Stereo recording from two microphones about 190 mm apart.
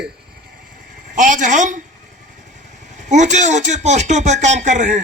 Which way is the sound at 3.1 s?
40° right (ahead or behind).